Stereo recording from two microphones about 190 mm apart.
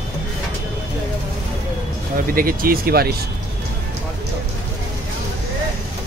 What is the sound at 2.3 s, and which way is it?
Speech, 50° right (ahead or behind).